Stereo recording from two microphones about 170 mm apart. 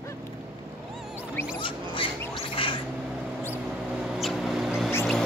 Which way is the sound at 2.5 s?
30° left (ahead or behind).